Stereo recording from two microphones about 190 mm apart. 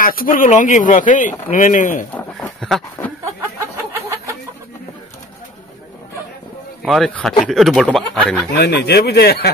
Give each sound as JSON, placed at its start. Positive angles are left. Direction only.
{"t": 0.0, "sound": "speech", "side_deg": 50}
{"t": 2.1, "sound": "a sound", "side_deg": 5}
{"t": 6.8, "sound": "speech", "side_deg": 0}
{"t": 8.5, "sound": "speech", "side_deg": 60}